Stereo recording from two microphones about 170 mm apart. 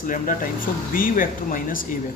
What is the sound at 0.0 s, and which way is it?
A man's voice, 50° left (ahead or behind).